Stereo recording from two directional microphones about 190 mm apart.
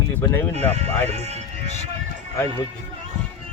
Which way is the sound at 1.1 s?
35° right (ahead or behind).